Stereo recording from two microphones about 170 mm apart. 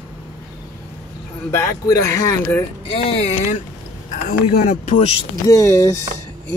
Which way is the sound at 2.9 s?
35° left (ahead or behind).